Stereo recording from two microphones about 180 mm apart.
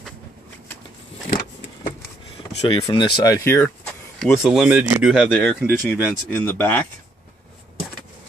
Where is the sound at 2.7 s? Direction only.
25° left (ahead or behind).